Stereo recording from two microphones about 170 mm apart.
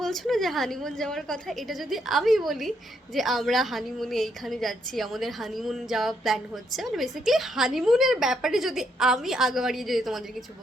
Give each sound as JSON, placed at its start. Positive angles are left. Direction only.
{"t": 0.0, "sound": "a woman's voice", "side_deg": 0}